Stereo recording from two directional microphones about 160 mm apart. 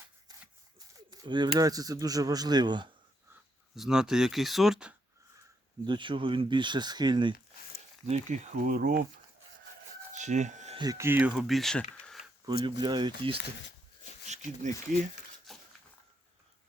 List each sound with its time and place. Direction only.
0.9 s speech: 25° right (ahead or behind)
3.8 s speech: 5° right (ahead or behind)
5.8 s speech: 30° right (ahead or behind)
8.0 s speech: 45° right (ahead or behind); by 9.0 s 65° right (ahead or behind)
10.1 s a sound: 50° right (ahead or behind)
10.8 s speech: 20° right (ahead or behind); by 12.3 s centre (ahead or behind)
12.6 s speech: 25° right (ahead or behind)
14.3 s speech: 50° right (ahead or behind)
15.5 s a sound: centre (ahead or behind)